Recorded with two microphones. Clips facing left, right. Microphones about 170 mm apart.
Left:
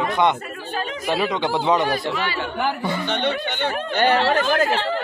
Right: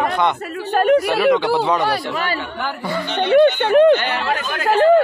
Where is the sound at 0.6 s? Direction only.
65° right (ahead or behind).